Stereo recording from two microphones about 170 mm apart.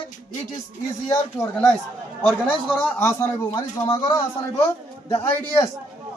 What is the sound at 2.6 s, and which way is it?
Speech, 5° left (ahead or behind).